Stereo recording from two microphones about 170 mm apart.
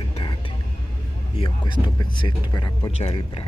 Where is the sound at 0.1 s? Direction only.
30° left (ahead or behind).